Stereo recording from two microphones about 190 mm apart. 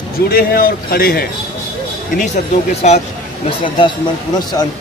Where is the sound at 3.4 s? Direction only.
25° left (ahead or behind).